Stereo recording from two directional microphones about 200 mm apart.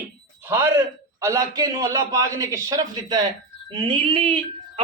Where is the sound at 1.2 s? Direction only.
15° right (ahead or behind).